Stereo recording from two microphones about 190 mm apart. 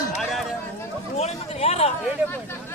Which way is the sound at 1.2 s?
35° left (ahead or behind).